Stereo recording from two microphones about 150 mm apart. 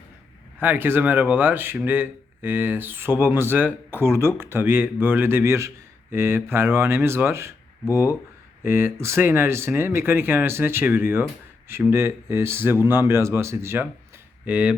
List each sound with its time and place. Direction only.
0.6 s speech: 15° right (ahead or behind)